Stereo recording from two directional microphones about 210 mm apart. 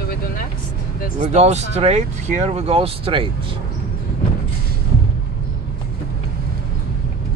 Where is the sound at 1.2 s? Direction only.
30° right (ahead or behind).